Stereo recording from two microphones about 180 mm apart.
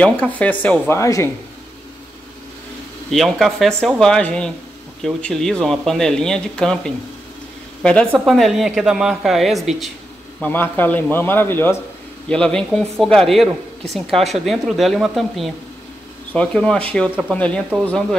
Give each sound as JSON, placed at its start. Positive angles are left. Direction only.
{"t": 0.0, "sound": "a man's voice", "side_deg": 5}
{"t": 3.1, "sound": "a woman's voice", "side_deg": 0}
{"t": 10.4, "sound": "a man's voice", "side_deg": 10}